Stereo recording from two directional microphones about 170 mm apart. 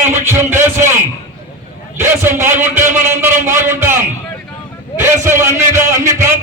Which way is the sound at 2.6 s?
15° right (ahead or behind).